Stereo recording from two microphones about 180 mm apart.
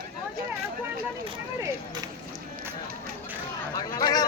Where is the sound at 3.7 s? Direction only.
20° left (ahead or behind).